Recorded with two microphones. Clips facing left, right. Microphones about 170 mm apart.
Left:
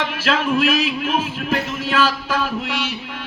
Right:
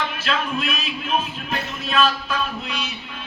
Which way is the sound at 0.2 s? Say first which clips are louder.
Left 6 dB; 85° left.